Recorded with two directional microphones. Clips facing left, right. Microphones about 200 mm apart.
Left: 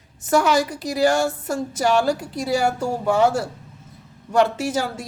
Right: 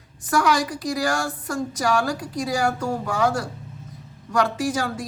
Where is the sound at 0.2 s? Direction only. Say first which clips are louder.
Left 3 dB; 25° left (ahead or behind).